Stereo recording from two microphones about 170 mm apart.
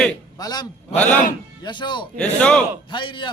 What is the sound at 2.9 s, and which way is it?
Speech, 30° left (ahead or behind).